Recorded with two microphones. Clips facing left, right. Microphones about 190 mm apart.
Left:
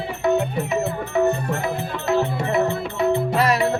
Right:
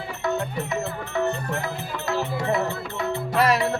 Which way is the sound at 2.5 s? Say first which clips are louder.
Left 5 dB; 25° left (ahead or behind).